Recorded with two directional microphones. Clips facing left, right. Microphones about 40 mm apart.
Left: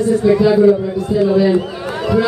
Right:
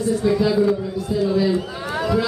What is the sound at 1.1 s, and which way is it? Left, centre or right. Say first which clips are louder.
Speech: left 6 dB; left.